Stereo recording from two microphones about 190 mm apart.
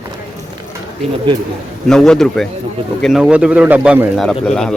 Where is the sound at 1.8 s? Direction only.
5° left (ahead or behind).